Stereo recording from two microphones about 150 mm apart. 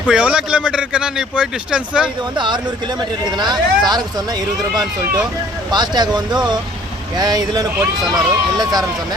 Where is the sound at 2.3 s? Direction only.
30° right (ahead or behind).